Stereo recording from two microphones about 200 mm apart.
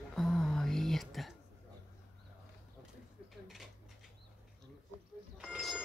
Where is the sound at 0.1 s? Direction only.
Centre (ahead or behind).